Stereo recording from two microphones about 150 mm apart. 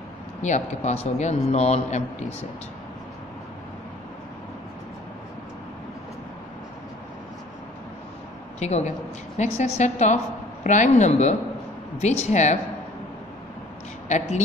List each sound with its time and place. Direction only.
0.4 s a woman's voice: 50° left (ahead or behind)
8.5 s a woman's voice: 50° left (ahead or behind)
14.0 s speech: 50° left (ahead or behind)